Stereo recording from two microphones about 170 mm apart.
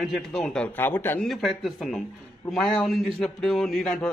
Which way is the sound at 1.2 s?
Centre (ahead or behind).